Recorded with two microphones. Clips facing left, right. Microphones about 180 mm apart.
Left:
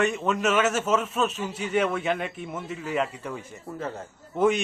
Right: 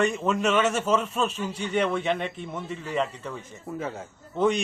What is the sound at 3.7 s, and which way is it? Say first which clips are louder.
Speech: right 1 dB; 5° right (ahead or behind).